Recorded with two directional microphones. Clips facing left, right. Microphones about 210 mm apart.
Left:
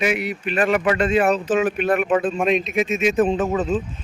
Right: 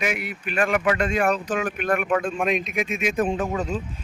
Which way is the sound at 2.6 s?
10° right (ahead or behind).